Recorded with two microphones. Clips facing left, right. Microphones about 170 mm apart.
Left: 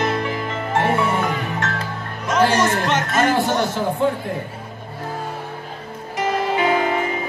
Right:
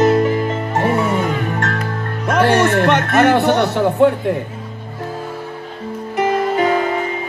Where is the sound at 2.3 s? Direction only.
60° right (ahead or behind).